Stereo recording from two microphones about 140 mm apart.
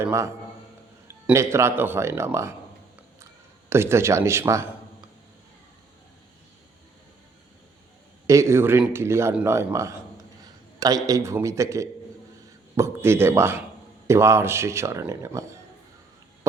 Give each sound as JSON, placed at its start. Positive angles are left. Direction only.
{"t": 0.0, "sound": "speech", "side_deg": -20}
{"t": 3.7, "sound": "speech", "side_deg": -20}
{"t": 8.3, "sound": "speech", "side_deg": -20}